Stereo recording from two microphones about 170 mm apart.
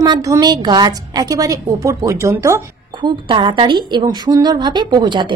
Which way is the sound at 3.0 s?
30° right (ahead or behind).